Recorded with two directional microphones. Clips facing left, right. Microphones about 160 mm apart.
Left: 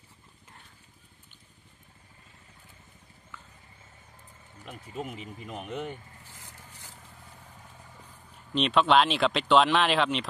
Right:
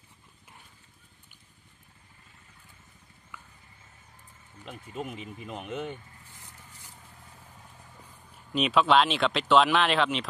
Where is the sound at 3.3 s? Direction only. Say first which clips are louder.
Right 1 dB; 10° right (ahead or behind).